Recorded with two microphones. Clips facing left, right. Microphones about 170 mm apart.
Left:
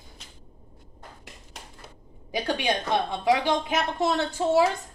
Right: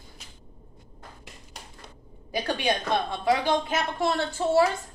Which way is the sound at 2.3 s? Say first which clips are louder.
Even; 20° left (ahead or behind).